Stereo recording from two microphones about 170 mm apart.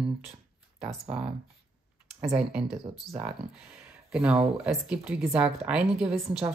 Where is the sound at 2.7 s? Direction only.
15° right (ahead or behind).